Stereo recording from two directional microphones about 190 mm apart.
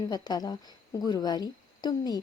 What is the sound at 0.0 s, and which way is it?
A woman's voice, 20° left (ahead or behind).